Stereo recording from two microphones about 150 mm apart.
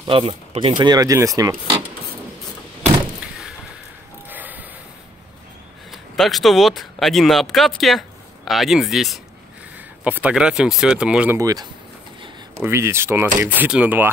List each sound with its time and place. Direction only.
0.1 s speech: 40° right (ahead or behind); by 1.8 s 25° right (ahead or behind)
4.3 s a sound: 10° right (ahead or behind)
5.9 s speech: centre (ahead or behind)
9.8 s speech: 10° right (ahead or behind)
11.3 s speech: 25° right (ahead or behind)